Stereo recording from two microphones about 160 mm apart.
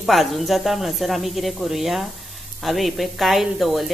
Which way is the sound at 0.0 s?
Centre (ahead or behind).